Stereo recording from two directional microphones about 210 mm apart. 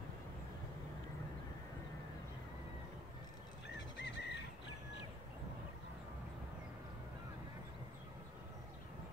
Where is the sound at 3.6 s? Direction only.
55° left (ahead or behind).